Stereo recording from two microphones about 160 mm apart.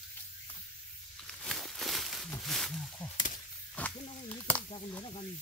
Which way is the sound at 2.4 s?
Centre (ahead or behind).